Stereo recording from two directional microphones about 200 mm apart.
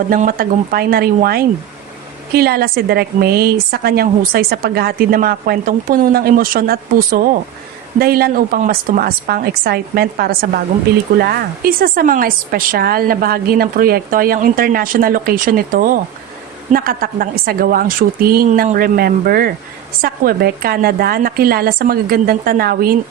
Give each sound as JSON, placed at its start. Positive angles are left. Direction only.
{"t": 0.1, "sound": "a woman's voice", "side_deg": -45}